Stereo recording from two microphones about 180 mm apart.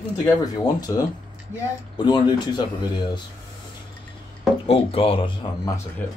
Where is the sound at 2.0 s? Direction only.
25° left (ahead or behind).